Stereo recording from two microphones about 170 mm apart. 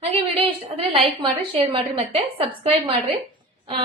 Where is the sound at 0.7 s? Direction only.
30° right (ahead or behind).